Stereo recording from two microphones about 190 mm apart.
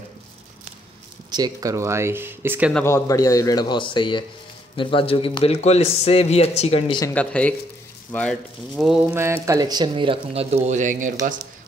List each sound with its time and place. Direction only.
1.3 s speech: 20° right (ahead or behind)
2.7 s a man's voice: 15° left (ahead or behind); by 7.0 s 35° left (ahead or behind)
7.0 s a man's voice: 10° left (ahead or behind); by 11.3 s 40° right (ahead or behind)